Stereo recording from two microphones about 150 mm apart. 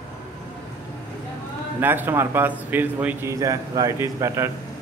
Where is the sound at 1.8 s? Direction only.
15° right (ahead or behind).